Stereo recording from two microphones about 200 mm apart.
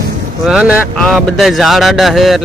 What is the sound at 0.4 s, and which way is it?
Speech, 5° right (ahead or behind).